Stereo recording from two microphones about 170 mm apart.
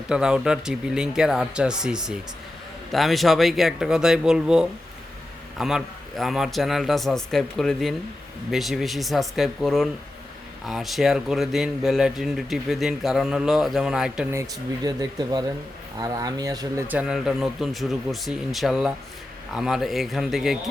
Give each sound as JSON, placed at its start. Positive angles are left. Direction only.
{"t": 0.1, "sound": "speech", "side_deg": -5}
{"t": 14.8, "sound": "speech", "side_deg": -25}
{"t": 16.9, "sound": "speech", "side_deg": -5}